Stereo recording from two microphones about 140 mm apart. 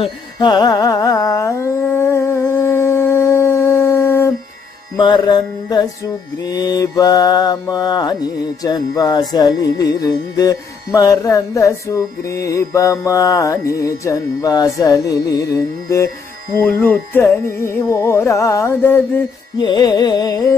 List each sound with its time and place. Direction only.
0.0 s carnatic music: 30° left (ahead or behind)
4.9 s music: 30° left (ahead or behind)
19.6 s music: 30° left (ahead or behind)